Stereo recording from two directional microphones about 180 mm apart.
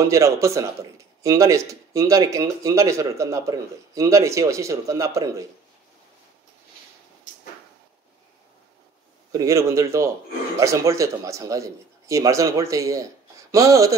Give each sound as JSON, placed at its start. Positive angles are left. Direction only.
{"t": 0.0, "sound": "speech", "side_deg": -15}
{"t": 9.3, "sound": "speech", "side_deg": -15}